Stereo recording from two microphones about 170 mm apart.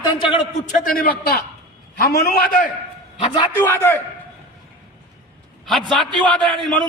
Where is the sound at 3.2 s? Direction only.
30° left (ahead or behind).